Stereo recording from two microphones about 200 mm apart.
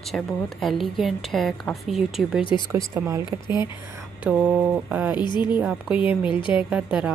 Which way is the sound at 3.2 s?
20° left (ahead or behind).